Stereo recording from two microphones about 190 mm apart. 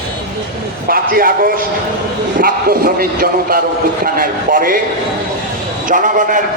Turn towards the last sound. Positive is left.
turn(degrees=-45)  # may be behind; listen again after turning